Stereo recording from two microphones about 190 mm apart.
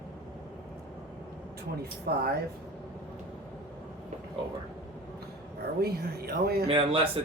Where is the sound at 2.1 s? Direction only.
55° right (ahead or behind).